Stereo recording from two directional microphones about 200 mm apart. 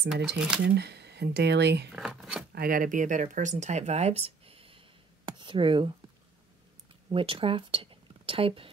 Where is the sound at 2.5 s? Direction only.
45° right (ahead or behind); by 5.9 s 25° right (ahead or behind).